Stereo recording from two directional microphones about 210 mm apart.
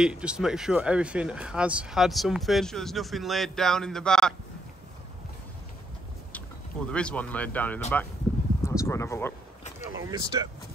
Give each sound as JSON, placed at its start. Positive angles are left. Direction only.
{"t": 0.0, "sound": "speech", "side_deg": -5}
{"t": 6.9, "sound": "speech", "side_deg": 5}
{"t": 9.8, "sound": "speech", "side_deg": -15}